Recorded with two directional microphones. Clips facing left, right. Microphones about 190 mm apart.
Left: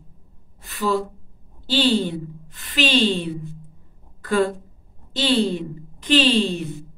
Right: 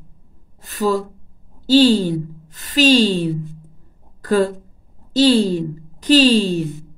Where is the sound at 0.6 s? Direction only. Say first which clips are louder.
Right 4 dB; 40° right (ahead or behind).